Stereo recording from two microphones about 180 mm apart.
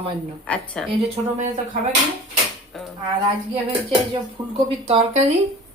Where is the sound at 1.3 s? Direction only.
40° right (ahead or behind).